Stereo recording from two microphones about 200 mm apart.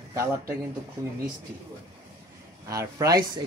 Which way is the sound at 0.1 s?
15° right (ahead or behind).